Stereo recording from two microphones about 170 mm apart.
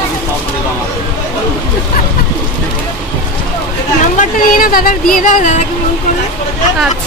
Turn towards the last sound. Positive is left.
turn(degrees=45)  # may be behind; listen again after turning